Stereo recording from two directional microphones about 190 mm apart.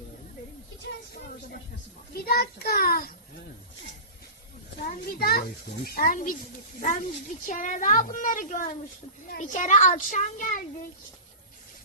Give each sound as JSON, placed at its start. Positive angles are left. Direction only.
{"t": 0.9, "sound": "a sound", "side_deg": 60}
{"t": 2.1, "sound": "a child's voice", "side_deg": 55}
{"t": 4.9, "sound": "a child's voice", "side_deg": 50}